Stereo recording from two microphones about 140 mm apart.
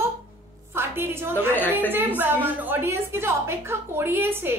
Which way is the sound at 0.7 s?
15° right (ahead or behind).